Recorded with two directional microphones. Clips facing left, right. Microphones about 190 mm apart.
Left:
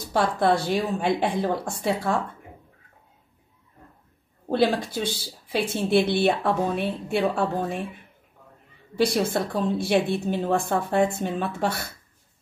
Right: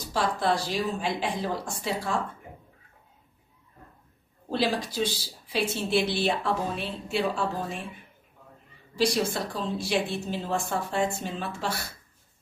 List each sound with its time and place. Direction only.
0.1 s a woman's voice: 55° left (ahead or behind)
4.5 s a woman's voice: 55° left (ahead or behind)
8.9 s a woman's voice: 55° left (ahead or behind)